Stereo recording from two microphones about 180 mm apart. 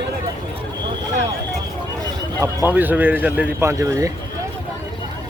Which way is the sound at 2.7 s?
10° right (ahead or behind).